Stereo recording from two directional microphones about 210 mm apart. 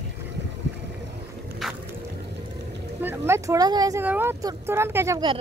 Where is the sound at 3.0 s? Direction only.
10° right (ahead or behind).